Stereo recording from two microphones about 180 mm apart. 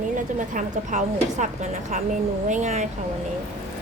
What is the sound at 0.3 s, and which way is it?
A woman's voice, 45° right (ahead or behind).